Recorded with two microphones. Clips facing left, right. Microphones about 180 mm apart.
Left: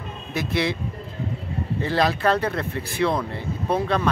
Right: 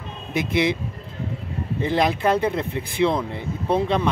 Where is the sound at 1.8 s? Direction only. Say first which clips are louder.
Right 1 dB; 20° right (ahead or behind).